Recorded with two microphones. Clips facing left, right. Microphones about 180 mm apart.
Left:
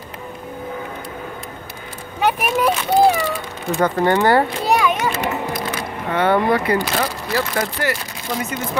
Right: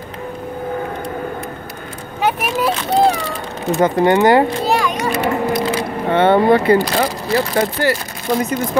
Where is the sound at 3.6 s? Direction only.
20° right (ahead or behind).